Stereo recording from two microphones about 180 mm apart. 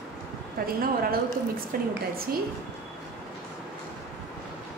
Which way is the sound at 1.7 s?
55° right (ahead or behind).